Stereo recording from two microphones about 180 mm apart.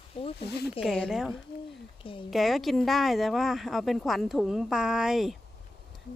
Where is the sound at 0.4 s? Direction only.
65° left (ahead or behind).